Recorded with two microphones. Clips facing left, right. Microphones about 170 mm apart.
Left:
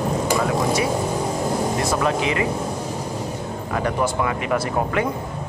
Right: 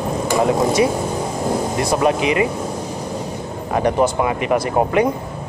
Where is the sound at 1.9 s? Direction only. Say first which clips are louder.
Right 8 dB; 20° right (ahead or behind).